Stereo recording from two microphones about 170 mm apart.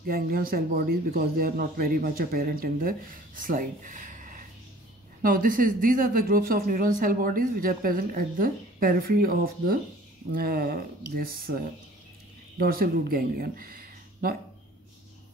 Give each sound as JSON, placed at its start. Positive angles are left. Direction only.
{"t": 0.0, "sound": "speech", "side_deg": -60}